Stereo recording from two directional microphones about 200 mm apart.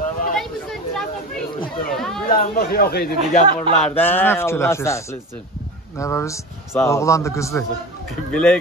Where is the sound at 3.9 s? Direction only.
10° left (ahead or behind).